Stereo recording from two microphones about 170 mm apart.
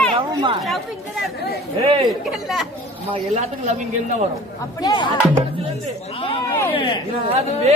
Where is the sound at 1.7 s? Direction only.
35° right (ahead or behind).